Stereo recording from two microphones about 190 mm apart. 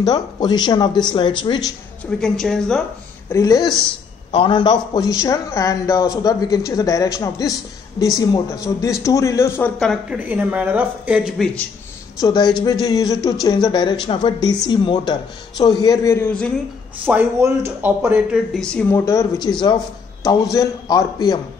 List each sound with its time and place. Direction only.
0.0 s speech: 20° left (ahead or behind)
2.0 s speech: 5° left (ahead or behind)
3.3 s a man's voice: 15° left (ahead or behind)
8.8 s a man's voice: 15° left (ahead or behind)
9.8 s speech: centre (ahead or behind)
10.1 s speech: 10° right (ahead or behind)
12.2 s a man's voice: 20° left (ahead or behind); by 16.5 s 5° left (ahead or behind)
17.1 s speech: 10° right (ahead or behind); by 19.2 s 15° left (ahead or behind)
19.4 s speech: 25° left (ahead or behind)